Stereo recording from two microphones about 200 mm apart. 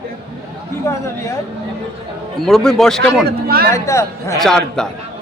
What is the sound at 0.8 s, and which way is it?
Speech, 15° left (ahead or behind).